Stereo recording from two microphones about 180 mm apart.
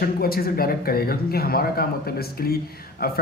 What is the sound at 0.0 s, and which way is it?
Speech, 55° left (ahead or behind).